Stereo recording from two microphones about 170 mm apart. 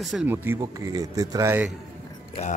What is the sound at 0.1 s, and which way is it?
Speech, 10° right (ahead or behind).